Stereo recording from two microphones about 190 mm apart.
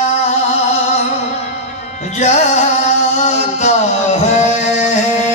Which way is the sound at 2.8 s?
35° left (ahead or behind).